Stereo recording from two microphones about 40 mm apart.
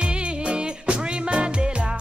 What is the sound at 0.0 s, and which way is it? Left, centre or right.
Music, right.